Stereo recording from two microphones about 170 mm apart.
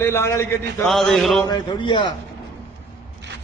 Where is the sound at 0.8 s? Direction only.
Centre (ahead or behind).